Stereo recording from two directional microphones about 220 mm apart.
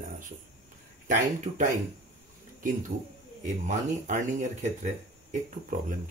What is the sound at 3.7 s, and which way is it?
Speech, 35° right (ahead or behind).